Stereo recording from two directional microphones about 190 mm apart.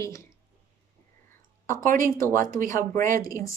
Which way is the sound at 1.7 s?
45° right (ahead or behind).